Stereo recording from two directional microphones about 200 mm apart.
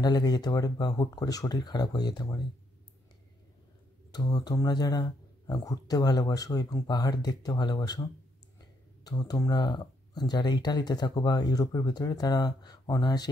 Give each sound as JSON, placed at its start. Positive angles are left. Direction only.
{"t": 0.0, "sound": "speech", "side_deg": 20}
{"t": 4.1, "sound": "speech", "side_deg": 20}